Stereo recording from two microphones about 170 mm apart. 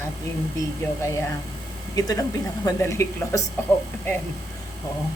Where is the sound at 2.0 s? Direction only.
20° left (ahead or behind).